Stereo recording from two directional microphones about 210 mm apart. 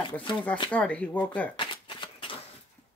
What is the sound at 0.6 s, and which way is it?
Speech, 5° left (ahead or behind).